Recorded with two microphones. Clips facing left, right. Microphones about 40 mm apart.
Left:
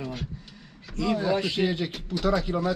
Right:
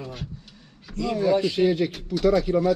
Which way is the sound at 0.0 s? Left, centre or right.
Centre.